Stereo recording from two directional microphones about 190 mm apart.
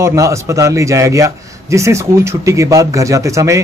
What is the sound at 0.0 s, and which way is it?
A man's voice, 15° right (ahead or behind).